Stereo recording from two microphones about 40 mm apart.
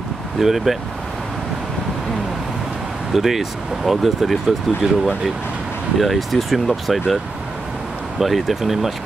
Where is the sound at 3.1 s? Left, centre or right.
Centre.